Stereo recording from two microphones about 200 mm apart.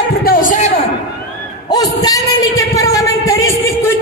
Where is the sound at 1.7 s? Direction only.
20° left (ahead or behind).